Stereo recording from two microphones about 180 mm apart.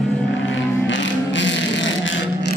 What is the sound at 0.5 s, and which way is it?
Vehicle, 90° left.